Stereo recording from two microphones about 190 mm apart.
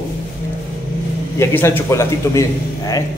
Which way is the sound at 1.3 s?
10° left (ahead or behind).